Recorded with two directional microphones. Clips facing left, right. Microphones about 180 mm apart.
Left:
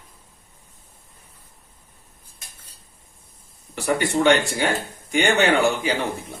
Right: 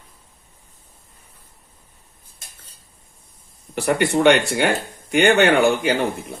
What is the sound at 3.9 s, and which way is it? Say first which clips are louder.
Speech: right 3 dB; 65° right (ahead or behind).